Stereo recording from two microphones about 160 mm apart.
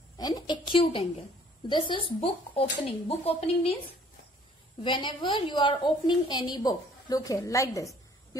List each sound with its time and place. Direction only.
0.2 s a woman's voice: 25° left (ahead or behind)
4.8 s a woman's voice: 30° left (ahead or behind)